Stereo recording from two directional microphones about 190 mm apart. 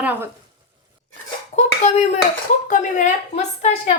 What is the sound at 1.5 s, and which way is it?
Clapping, 35° left (ahead or behind).